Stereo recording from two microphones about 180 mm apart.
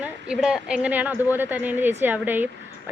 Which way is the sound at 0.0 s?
5° right (ahead or behind).